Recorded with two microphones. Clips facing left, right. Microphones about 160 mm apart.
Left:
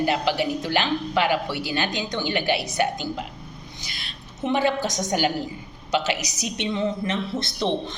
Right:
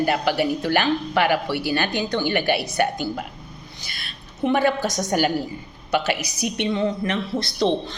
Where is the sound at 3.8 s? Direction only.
55° right (ahead or behind).